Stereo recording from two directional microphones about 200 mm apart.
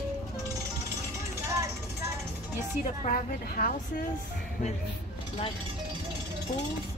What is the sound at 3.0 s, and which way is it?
Speech, 45° left (ahead or behind).